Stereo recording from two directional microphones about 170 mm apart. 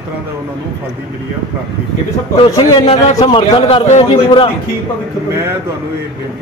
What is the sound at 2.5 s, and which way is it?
A man's voice, 35° left (ahead or behind).